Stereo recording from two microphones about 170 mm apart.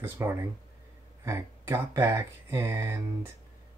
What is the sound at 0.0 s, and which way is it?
Speech, 15° right (ahead or behind).